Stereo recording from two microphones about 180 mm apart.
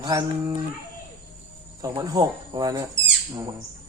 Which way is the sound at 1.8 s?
20° right (ahead or behind).